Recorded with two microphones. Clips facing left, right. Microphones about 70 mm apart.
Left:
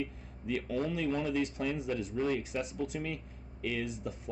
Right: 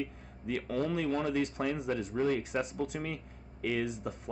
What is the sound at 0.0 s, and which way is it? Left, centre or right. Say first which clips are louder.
Speech: even; right.